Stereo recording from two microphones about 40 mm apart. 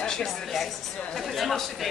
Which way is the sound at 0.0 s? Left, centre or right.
Centre.